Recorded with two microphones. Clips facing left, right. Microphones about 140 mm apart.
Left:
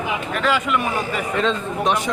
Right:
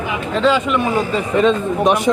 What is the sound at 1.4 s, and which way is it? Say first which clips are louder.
Speech: right 8 dB; 10° right (ahead or behind).